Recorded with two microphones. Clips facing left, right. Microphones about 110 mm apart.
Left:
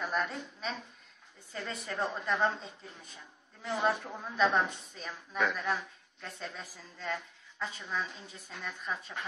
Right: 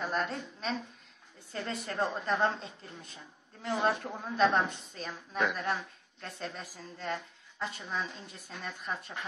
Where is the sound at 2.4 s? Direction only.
Centre (ahead or behind).